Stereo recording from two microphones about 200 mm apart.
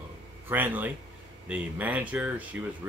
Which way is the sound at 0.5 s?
10° right (ahead or behind).